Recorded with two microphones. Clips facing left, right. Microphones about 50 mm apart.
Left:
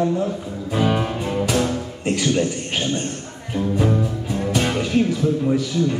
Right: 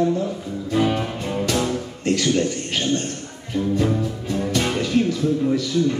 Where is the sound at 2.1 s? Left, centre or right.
Centre.